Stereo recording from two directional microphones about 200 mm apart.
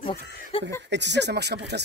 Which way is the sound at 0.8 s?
60° right (ahead or behind).